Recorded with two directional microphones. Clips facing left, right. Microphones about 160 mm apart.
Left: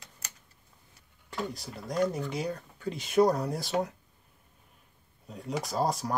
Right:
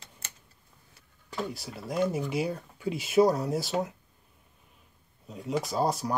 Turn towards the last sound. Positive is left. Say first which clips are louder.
# right 1 dB
turn(degrees=0)  # may be behind; listen again after turning